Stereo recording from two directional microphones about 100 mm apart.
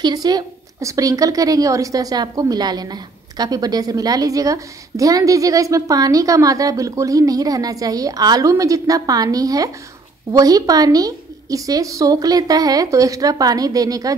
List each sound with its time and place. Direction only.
0.0 s a woman's voice: 40° right (ahead or behind)